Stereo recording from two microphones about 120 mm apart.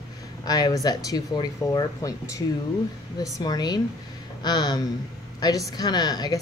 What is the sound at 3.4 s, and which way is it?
Speech, 35° left (ahead or behind).